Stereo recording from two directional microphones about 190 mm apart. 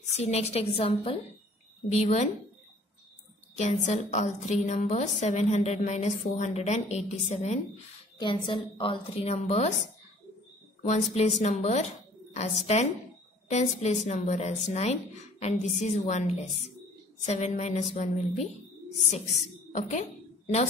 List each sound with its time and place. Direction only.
0.0 s a woman's voice: 35° left (ahead or behind)
3.5 s a woman's voice: 40° left (ahead or behind)
11.1 s a woman's voice: 35° left (ahead or behind)